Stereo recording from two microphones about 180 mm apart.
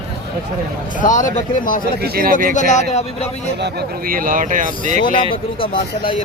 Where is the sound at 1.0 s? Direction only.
45° left (ahead or behind).